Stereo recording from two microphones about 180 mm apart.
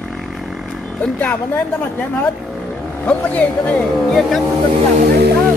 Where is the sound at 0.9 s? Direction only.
10° left (ahead or behind).